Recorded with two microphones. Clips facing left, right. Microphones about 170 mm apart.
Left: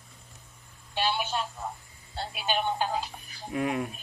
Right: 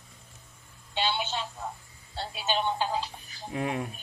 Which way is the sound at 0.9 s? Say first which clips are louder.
Left 1 dB; 25° right (ahead or behind).